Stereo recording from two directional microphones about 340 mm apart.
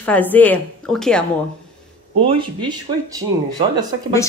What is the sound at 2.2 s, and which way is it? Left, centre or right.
Speech, centre.